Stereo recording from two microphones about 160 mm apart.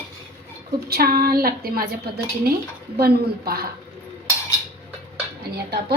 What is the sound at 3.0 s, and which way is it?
Speech, 75° right (ahead or behind).